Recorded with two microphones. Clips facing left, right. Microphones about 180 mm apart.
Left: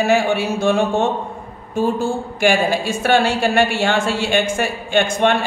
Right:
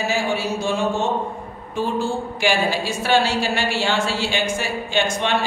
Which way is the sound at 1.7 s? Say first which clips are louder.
Left 4 dB; 50° left (ahead or behind).